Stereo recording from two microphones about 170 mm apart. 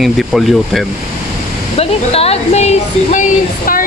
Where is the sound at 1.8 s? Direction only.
35° left (ahead or behind).